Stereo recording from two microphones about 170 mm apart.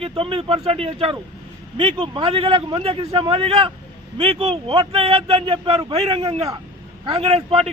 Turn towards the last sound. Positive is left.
turn(degrees=-35)  # may be behind; listen again after turning